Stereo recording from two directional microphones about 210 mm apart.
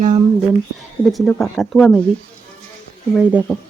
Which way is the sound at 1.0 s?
Centre (ahead or behind).